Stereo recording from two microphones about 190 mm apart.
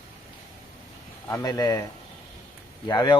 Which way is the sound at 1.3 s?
20° left (ahead or behind).